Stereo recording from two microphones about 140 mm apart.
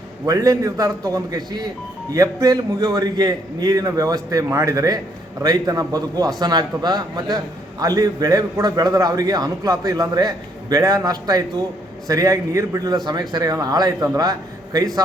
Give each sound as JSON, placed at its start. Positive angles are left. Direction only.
{"t": 0.3, "sound": "a man's voice", "side_deg": -25}